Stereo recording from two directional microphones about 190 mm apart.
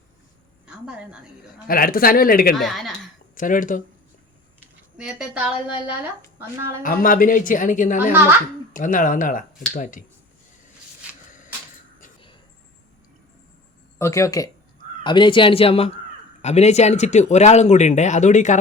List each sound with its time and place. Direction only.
0.7 s a woman's voice: 5° right (ahead or behind)
1.6 s speech: 50° left (ahead or behind)
2.6 s a woman's voice: centre (ahead or behind)
3.3 s speech: 45° left (ahead or behind)
4.9 s a woman's voice: 5° right (ahead or behind)
6.8 s speech: 45° left (ahead or behind)
11.3 s a sound: 40° left (ahead or behind)
14.0 s speech: 15° left (ahead or behind); by 18.6 s 40° left (ahead or behind)